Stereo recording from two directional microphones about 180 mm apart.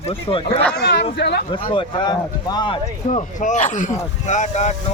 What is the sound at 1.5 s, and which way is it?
Speech, 30° left (ahead or behind).